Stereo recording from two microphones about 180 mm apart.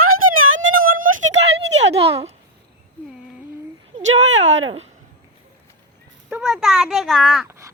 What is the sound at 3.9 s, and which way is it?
Speech, 35° right (ahead or behind).